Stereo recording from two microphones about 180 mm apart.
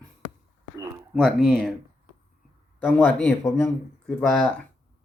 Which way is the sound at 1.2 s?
Centre (ahead or behind).